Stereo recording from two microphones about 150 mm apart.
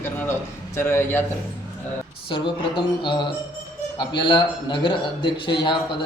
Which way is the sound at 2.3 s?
30° left (ahead or behind).